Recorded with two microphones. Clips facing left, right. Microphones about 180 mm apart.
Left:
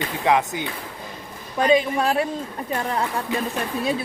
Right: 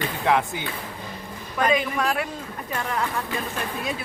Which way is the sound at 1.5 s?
30° left (ahead or behind).